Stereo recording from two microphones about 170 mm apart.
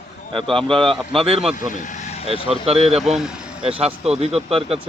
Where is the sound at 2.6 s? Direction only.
35° right (ahead or behind).